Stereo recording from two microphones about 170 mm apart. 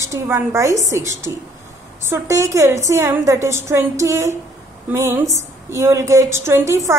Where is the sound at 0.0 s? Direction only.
15° right (ahead or behind).